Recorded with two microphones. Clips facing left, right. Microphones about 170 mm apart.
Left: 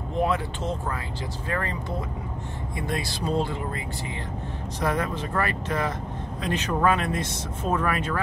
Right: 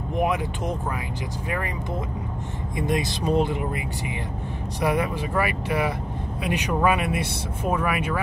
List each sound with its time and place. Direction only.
0.1 s speech: 15° right (ahead or behind)
2.9 s speech: 20° right (ahead or behind)